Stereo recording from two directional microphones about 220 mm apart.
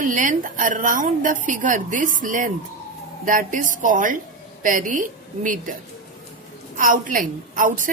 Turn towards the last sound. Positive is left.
turn(degrees=-35)  # may be behind; listen again after turning